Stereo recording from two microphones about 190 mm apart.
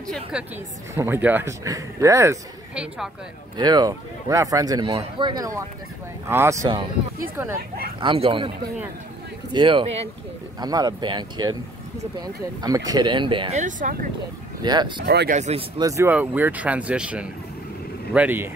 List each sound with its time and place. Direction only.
0.1 s a woman's voice: 5° right (ahead or behind)
2.7 s a woman's voice: 5° right (ahead or behind)
3.5 s speech: 20° right (ahead or behind)
8.0 s speech: 25° right (ahead or behind)
9.5 s speech: 25° right (ahead or behind)
13.6 s speech: 40° right (ahead or behind)
14.6 s speech: 20° right (ahead or behind)
15.0 s speech: 60° right (ahead or behind)
15.3 s speech: 35° right (ahead or behind)
15.8 s speech: 15° right (ahead or behind)